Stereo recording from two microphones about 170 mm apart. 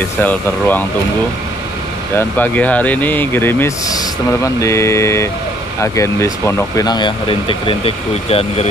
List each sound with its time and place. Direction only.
0.0 s speech: 10° left (ahead or behind)
2.1 s speech: 10° left (ahead or behind); by 8.6 s 35° left (ahead or behind)